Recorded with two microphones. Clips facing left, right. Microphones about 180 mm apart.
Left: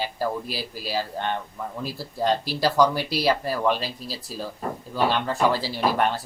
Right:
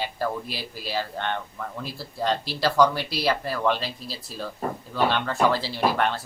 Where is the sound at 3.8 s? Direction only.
40° left (ahead or behind).